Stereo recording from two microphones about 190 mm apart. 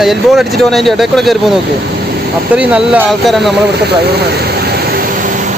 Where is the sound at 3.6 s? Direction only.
60° right (ahead or behind).